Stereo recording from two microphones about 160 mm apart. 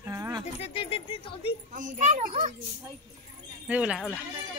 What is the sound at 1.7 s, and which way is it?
Speech, 50° right (ahead or behind).